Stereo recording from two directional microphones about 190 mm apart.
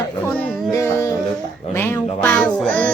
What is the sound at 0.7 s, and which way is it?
Speech, 15° left (ahead or behind).